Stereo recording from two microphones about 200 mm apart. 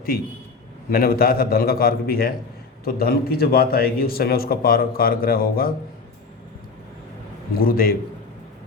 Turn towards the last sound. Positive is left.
turn(degrees=45)  # may be behind; listen again after turning